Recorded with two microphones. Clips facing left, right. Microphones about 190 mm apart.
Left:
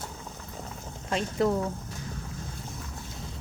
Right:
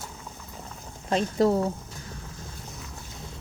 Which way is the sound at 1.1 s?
35° right (ahead or behind).